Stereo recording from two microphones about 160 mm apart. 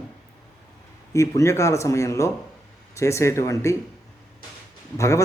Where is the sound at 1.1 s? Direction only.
20° left (ahead or behind).